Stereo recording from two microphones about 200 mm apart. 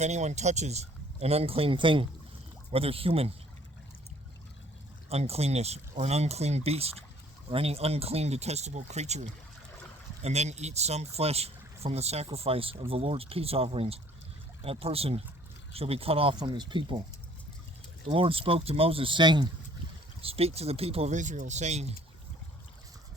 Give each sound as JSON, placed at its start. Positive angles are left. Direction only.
{"t": 0.0, "sound": "speech", "side_deg": -35}
{"t": 5.0, "sound": "speech", "side_deg": -30}
{"t": 10.2, "sound": "speech", "side_deg": -35}
{"t": 18.1, "sound": "speech", "side_deg": -30}